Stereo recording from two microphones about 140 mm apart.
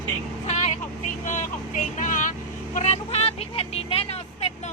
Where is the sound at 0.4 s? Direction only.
55° left (ahead or behind).